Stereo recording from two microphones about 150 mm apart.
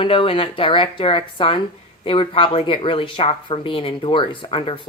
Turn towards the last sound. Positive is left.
turn(degrees=35)  # may be behind; listen again after turning